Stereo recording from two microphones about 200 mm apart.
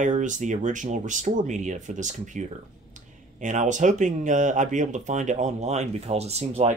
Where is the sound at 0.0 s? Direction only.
40° right (ahead or behind).